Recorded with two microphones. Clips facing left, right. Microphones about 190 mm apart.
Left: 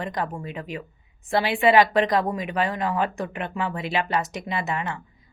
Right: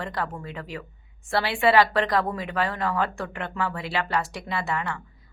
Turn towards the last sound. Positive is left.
turn(degrees=20)  # may be behind; listen again after turning